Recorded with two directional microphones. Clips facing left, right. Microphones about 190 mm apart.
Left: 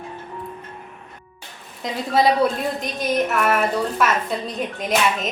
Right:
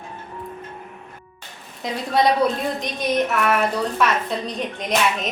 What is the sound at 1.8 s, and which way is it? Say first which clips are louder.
A woman's voice: left 1 dB; centre (ahead or behind).